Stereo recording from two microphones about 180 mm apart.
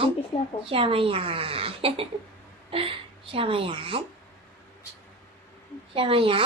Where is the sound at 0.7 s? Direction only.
30° right (ahead or behind).